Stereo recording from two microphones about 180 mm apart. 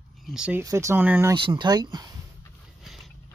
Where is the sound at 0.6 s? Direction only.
15° right (ahead or behind).